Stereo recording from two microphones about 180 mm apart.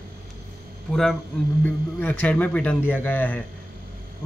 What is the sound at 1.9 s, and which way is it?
Speech, 10° left (ahead or behind).